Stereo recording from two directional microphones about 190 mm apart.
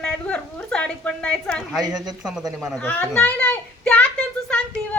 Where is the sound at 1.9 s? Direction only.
20° right (ahead or behind).